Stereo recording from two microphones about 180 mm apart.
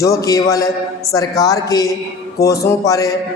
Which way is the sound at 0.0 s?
20° left (ahead or behind).